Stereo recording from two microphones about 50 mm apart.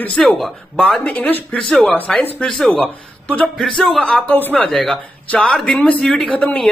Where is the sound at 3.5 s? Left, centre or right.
Centre.